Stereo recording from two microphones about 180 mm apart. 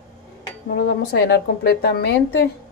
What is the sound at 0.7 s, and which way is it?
Speech, 65° left (ahead or behind).